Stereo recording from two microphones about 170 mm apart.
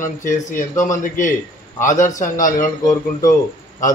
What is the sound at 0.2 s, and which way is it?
Speech, 50° left (ahead or behind).